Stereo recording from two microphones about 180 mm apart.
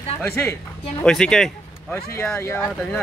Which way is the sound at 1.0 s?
5° left (ahead or behind).